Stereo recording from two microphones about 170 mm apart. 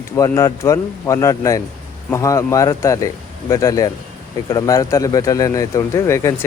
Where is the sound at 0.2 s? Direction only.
20° left (ahead or behind).